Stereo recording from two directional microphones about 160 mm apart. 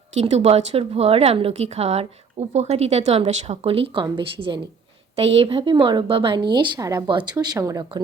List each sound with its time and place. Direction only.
0.2 s a woman's voice: 45° right (ahead or behind); by 8.0 s 25° right (ahead or behind)